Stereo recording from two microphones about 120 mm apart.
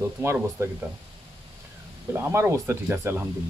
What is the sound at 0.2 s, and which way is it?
Speech, 20° right (ahead or behind).